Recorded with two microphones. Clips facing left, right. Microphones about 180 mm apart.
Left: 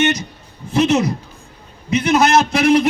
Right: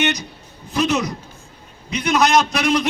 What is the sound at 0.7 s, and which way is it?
A man's voice, 25° left (ahead or behind).